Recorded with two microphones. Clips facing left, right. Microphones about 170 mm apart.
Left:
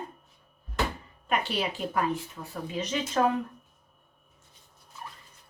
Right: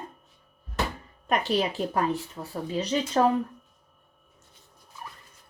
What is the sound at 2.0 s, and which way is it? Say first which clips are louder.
Speech: right 1 dB; 35° right (ahead or behind).